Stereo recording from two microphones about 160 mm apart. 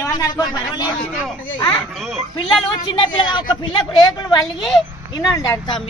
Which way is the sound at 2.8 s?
30° left (ahead or behind).